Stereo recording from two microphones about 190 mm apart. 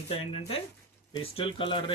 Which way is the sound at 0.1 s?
30° left (ahead or behind).